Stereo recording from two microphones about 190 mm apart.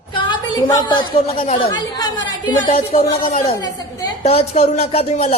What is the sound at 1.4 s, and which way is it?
Speech, 35° left (ahead or behind).